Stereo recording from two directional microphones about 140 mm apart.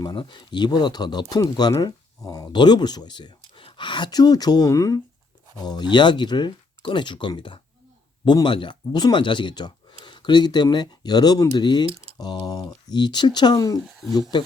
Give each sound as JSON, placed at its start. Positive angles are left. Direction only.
{"t": 0.0, "sound": "speech", "side_deg": 35}
{"t": 13.8, "sound": "speech", "side_deg": 0}
{"t": 14.1, "sound": "speech", "side_deg": 30}